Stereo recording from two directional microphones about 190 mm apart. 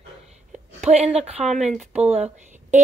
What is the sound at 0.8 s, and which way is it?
A woman's voice, 35° right (ahead or behind).